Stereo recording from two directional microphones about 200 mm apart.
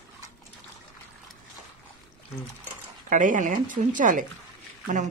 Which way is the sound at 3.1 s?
40° right (ahead or behind).